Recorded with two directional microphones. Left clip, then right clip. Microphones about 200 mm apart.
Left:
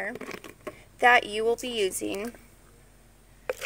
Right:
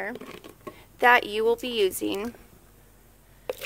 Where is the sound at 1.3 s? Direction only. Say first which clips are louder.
Right 3 dB; 10° right (ahead or behind).